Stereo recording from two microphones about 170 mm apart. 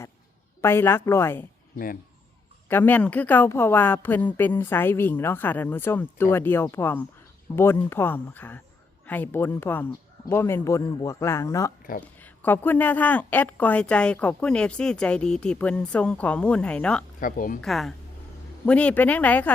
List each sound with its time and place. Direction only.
0.6 s a woman's voice: 15° left (ahead or behind)
2.6 s a woman's voice: 10° left (ahead or behind)
17.2 s a woman's voice: 55° left (ahead or behind)
17.6 s a woman's voice: centre (ahead or behind)